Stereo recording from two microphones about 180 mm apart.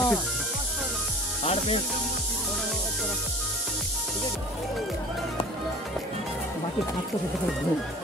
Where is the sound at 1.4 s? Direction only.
35° left (ahead or behind).